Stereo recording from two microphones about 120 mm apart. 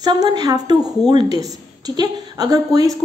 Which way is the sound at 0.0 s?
35° right (ahead or behind).